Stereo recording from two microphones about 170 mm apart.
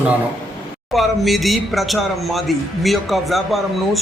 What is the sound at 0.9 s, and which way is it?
Speech, centre (ahead or behind).